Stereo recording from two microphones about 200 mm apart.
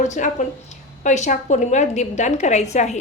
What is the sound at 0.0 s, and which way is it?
A woman's voice, 35° left (ahead or behind).